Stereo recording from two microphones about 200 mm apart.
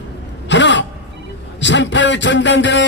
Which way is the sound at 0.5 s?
65° left (ahead or behind).